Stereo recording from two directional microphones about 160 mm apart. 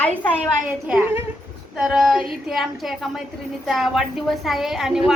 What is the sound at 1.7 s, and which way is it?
A woman's voice, centre (ahead or behind).